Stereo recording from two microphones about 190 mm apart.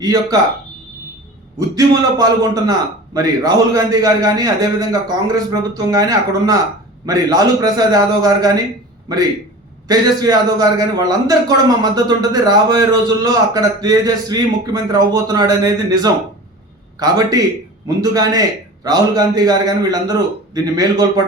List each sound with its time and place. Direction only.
0.0 s a man's voice: 20° right (ahead or behind)
1.5 s a man's voice: 20° right (ahead or behind)